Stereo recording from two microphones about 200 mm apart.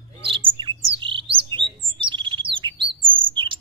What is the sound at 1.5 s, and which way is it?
Bird, 25° right (ahead or behind).